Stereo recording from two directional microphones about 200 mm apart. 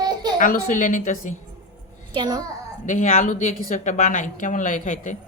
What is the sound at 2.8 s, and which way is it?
Speech, 40° left (ahead or behind).